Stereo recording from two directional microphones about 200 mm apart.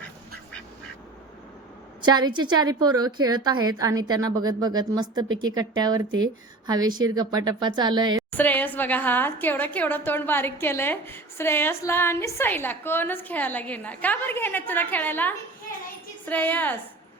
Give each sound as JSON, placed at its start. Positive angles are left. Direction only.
{"t": 2.1, "sound": "speech", "side_deg": -20}
{"t": 8.3, "sound": "a woman's voice", "side_deg": 10}